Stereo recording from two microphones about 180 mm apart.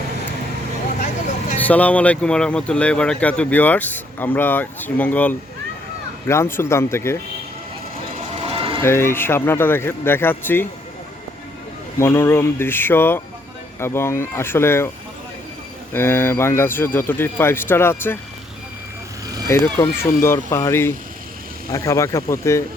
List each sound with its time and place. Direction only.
1.5 s speech: 10° left (ahead or behind)
8.4 s a sound: 30° right (ahead or behind)
8.8 s speech: 15° left (ahead or behind)
11.9 s speech: 15° left (ahead or behind)
15.9 s speech: 15° left (ahead or behind)
19.5 s speech: 15° left (ahead or behind)